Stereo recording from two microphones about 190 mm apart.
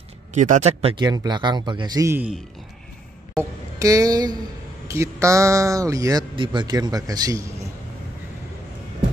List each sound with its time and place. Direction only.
0.3 s speech: 40° right (ahead or behind); by 2.3 s 10° right (ahead or behind)
3.3 s speech: 20° right (ahead or behind)